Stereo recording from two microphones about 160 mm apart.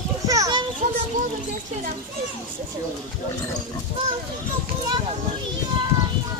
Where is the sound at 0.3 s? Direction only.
25° right (ahead or behind).